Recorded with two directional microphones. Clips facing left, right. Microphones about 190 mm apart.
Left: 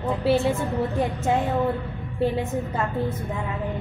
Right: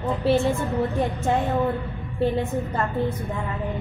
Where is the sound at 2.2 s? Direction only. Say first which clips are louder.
Right 1 dB; 5° left (ahead or behind).